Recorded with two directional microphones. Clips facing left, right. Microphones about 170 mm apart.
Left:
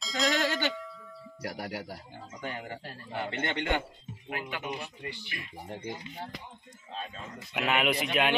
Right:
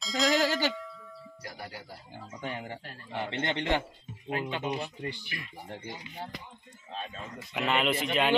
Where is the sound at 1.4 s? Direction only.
75° left (ahead or behind).